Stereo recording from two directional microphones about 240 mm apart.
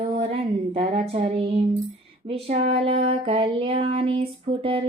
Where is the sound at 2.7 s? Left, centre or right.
Right.